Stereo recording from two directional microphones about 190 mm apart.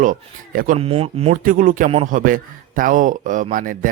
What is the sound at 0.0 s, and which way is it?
Speech, 45° right (ahead or behind).